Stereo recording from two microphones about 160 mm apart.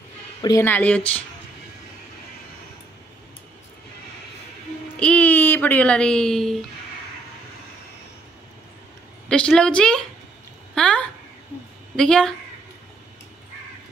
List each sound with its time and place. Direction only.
0.4 s speech: 25° left (ahead or behind)
0.7 s speech: 10° left (ahead or behind)
4.9 s speech: 5° left (ahead or behind)
9.3 s a woman's voice: 5° left (ahead or behind)